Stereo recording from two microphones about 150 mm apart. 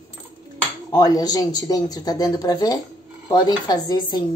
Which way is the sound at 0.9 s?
25° left (ahead or behind).